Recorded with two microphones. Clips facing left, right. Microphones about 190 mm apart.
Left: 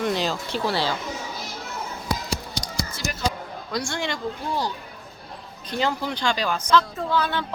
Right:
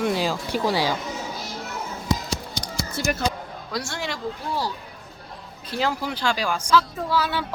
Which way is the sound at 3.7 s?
5° right (ahead or behind).